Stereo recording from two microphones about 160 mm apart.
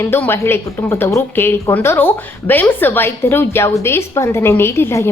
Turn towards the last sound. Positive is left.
turn(degrees=15)  # may be behind; listen again after turning